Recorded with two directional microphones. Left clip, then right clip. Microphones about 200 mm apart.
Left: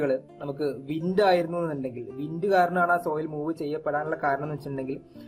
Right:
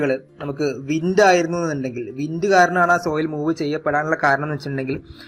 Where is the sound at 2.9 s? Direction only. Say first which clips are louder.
Right 7 dB; 35° right (ahead or behind).